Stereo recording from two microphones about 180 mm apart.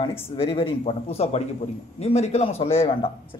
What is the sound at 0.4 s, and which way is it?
A man's voice, 30° left (ahead or behind).